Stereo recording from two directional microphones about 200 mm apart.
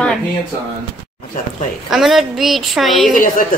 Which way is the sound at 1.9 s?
Centre (ahead or behind).